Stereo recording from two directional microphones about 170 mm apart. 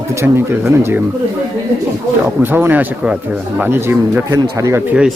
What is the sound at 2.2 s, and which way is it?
Speech, 10° right (ahead or behind).